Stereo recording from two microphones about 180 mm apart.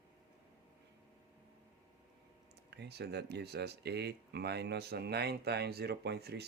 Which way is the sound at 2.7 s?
65° right (ahead or behind).